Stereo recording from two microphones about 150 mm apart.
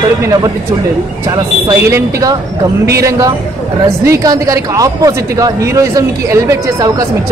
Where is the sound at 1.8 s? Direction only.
20° right (ahead or behind).